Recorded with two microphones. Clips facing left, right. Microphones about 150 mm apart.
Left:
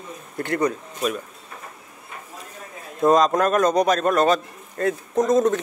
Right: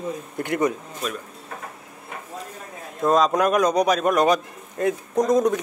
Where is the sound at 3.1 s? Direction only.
5° right (ahead or behind).